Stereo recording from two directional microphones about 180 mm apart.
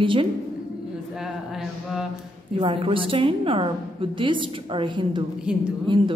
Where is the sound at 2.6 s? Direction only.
30° right (ahead or behind).